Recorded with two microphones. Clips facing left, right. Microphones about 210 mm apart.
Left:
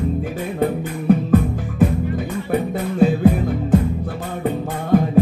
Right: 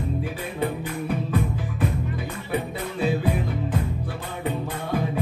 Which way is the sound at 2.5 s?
50° left (ahead or behind).